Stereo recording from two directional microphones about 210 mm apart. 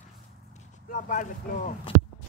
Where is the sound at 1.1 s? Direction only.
35° left (ahead or behind).